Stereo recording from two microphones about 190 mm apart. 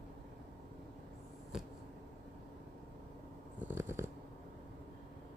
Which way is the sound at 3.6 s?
10° right (ahead or behind).